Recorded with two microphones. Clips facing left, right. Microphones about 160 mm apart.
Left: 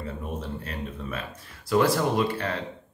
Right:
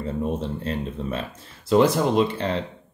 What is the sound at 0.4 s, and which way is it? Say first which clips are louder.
Speech: right 6 dB; 30° right (ahead or behind).